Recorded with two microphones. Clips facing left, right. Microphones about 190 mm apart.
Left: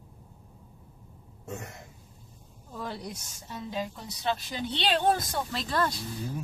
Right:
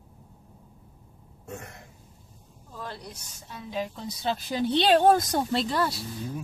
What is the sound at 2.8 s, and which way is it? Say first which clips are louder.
Speech: left 2 dB; 10° left (ahead or behind).